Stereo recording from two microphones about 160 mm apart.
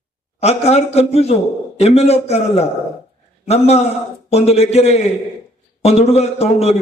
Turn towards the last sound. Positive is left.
turn(degrees=40)  # may be behind; listen again after turning